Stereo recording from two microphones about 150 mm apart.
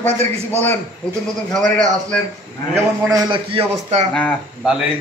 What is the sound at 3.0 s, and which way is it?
A man's voice, 25° right (ahead or behind).